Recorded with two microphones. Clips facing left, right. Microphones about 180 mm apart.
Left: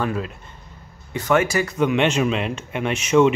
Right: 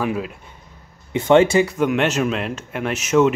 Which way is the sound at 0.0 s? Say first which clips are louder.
Right 1 dB; 10° right (ahead or behind).